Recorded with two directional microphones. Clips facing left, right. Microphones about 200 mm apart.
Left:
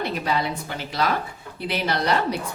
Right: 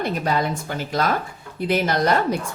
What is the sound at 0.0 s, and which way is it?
A woman's voice, 45° right (ahead or behind).